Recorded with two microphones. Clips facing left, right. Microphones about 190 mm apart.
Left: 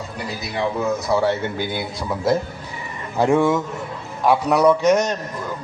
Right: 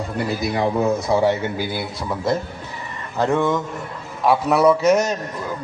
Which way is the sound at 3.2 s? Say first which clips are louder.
Left 2 dB; 10° left (ahead or behind).